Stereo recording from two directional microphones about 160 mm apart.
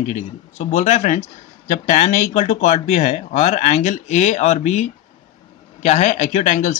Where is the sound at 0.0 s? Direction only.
45° left (ahead or behind).